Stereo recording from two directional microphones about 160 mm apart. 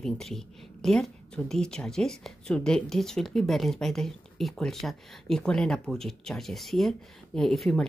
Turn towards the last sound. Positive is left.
turn(degrees=5)  # may be behind; listen again after turning